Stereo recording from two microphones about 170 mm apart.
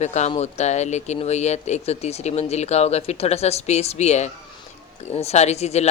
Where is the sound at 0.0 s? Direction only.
40° left (ahead or behind).